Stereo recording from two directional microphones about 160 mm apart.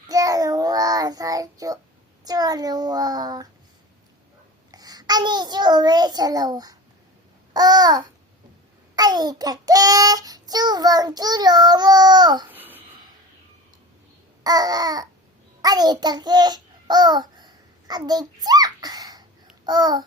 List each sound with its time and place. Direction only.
0.1 s child singing: 20° right (ahead or behind)
4.7 s a child's voice: 25° right (ahead or behind)
7.5 s child singing: 25° right (ahead or behind)
12.5 s a sound: 10° right (ahead or behind)
14.4 s child singing: 25° right (ahead or behind)
15.6 s a child's voice: 25° right (ahead or behind)
19.6 s child singing: 25° right (ahead or behind)